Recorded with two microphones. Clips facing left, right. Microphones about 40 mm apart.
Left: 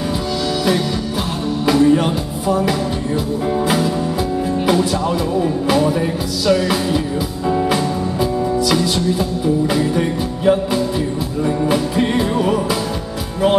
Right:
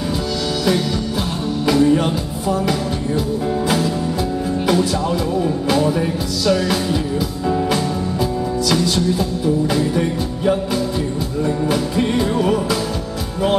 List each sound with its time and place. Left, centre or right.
1.7 s music: centre
5.3 s music: centre